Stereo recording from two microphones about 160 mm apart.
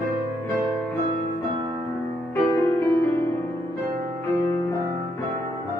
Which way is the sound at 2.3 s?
15° left (ahead or behind).